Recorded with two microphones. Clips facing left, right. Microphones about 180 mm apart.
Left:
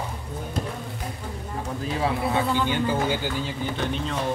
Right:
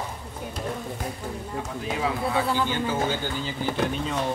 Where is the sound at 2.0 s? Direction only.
20° left (ahead or behind).